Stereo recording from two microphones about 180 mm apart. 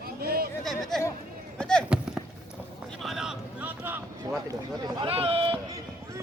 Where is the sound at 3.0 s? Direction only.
Centre (ahead or behind).